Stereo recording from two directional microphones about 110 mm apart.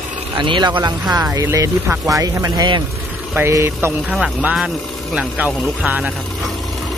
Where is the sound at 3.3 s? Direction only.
25° right (ahead or behind).